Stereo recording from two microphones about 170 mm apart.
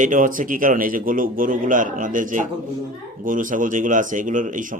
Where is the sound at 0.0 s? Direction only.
50° right (ahead or behind).